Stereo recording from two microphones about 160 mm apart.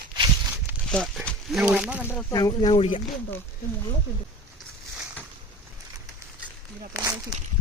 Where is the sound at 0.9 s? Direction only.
5° left (ahead or behind).